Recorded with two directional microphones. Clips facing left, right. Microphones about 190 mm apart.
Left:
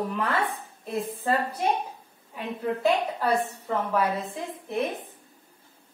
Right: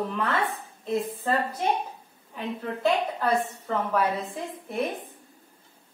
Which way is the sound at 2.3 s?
10° left (ahead or behind).